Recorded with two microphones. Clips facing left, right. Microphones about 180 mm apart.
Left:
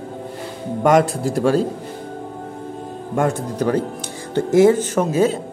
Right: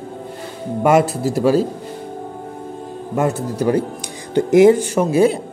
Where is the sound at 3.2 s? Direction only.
5° right (ahead or behind).